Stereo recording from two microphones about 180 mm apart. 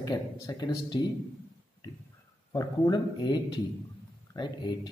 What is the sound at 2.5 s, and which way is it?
A man's voice, 20° left (ahead or behind).